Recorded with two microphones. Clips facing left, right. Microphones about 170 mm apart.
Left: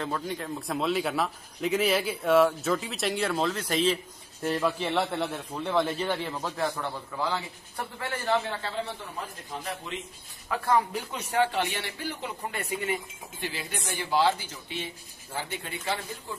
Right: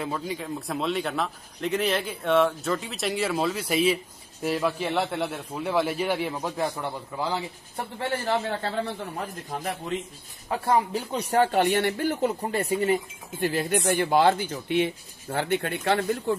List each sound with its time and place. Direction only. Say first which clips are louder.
0.0 s speech: right 1 dB; 5° right (ahead or behind); by 8.3 s 25° right (ahead or behind)
8.3 s speech: left 2 dB; 45° right (ahead or behind)
10.5 s speech: right 2 dB; 25° right (ahead or behind); by 16.3 s 65° right (ahead or behind)